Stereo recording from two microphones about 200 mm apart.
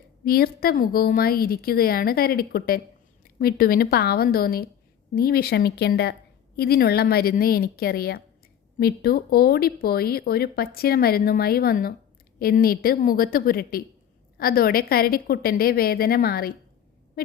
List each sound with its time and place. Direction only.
0.3 s speech: 50° left (ahead or behind)